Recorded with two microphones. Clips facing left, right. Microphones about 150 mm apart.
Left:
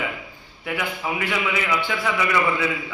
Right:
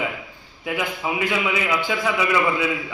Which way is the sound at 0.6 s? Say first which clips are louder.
Right 2 dB; 15° right (ahead or behind).